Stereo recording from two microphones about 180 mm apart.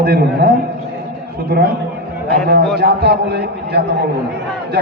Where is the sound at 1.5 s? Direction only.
60° right (ahead or behind).